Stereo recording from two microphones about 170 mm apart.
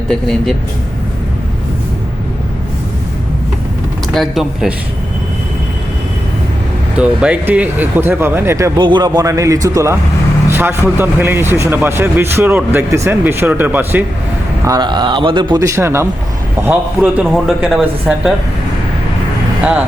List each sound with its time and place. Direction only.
0.1 s speech: 5° left (ahead or behind)
4.1 s speech: centre (ahead or behind)
6.9 s speech: 5° right (ahead or behind)
8.8 s a man's voice: 25° right (ahead or behind); by 14.0 s 10° right (ahead or behind)
14.6 s speech: 20° right (ahead or behind)
15.6 s speech: 15° right (ahead or behind)
17.0 s speech: 5° right (ahead or behind)